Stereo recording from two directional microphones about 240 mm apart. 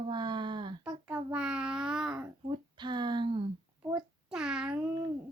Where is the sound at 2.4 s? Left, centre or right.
Centre.